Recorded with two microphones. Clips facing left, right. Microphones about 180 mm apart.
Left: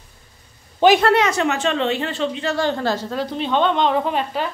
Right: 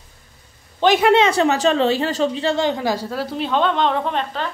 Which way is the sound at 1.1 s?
30° right (ahead or behind).